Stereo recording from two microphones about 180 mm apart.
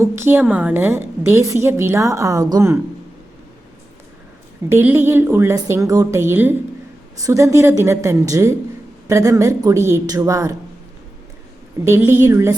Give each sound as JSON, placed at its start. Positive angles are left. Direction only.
{"t": 0.0, "sound": "a woman's voice", "side_deg": -15}
{"t": 4.7, "sound": "a woman's voice", "side_deg": -10}
{"t": 11.9, "sound": "a woman's voice", "side_deg": -10}